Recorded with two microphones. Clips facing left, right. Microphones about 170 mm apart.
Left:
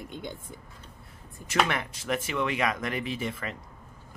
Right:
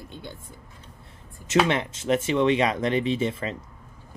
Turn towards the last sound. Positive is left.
turn(degrees=-25)  # may be behind; listen again after turning